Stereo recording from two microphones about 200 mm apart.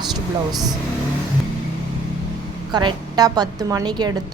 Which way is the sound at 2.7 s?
20° right (ahead or behind).